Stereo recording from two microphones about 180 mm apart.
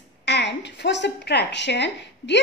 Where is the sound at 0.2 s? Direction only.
70° left (ahead or behind).